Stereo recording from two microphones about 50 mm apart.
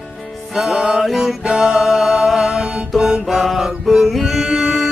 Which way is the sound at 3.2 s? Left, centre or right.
Centre.